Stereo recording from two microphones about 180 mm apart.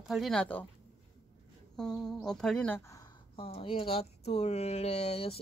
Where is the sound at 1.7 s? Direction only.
5° left (ahead or behind).